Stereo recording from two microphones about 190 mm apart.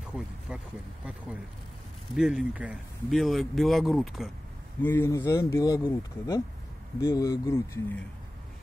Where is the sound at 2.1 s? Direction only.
5° right (ahead or behind).